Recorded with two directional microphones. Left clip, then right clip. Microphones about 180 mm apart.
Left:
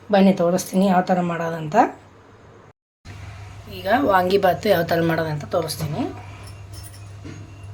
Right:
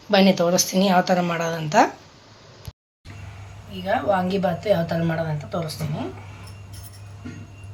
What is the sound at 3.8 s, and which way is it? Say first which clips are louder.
A woman's voice: left 4 dB; 55° left (ahead or behind).